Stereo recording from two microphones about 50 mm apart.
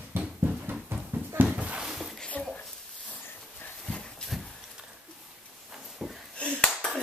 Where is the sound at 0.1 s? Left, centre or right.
Right.